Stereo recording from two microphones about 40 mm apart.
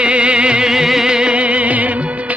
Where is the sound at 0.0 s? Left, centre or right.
Right.